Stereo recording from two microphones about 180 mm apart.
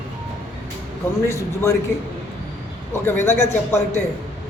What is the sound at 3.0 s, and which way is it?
Speech, 15° left (ahead or behind).